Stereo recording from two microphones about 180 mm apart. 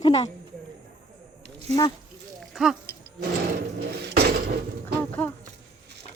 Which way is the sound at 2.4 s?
Centre (ahead or behind).